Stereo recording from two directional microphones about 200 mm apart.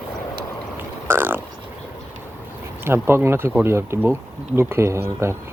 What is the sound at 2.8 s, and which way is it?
Speech, 10° right (ahead or behind).